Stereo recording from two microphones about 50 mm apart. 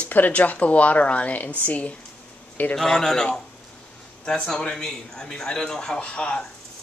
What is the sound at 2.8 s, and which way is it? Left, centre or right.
Speech, centre.